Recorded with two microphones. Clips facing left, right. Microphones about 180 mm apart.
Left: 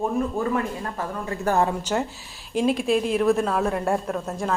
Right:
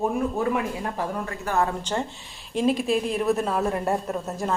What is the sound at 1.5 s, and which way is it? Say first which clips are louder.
Speech: left 4 dB; 45° left (ahead or behind).